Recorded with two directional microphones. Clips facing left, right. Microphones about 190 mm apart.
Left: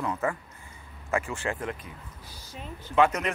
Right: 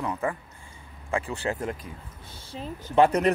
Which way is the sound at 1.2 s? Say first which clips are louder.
Right 2 dB; 35° right (ahead or behind).